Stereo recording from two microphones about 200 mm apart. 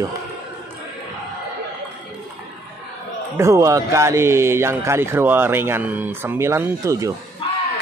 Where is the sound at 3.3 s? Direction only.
15° right (ahead or behind).